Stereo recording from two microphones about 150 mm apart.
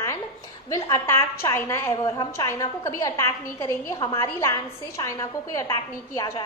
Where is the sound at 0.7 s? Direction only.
20° left (ahead or behind).